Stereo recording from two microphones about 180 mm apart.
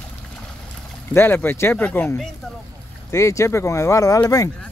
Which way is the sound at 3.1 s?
15° left (ahead or behind).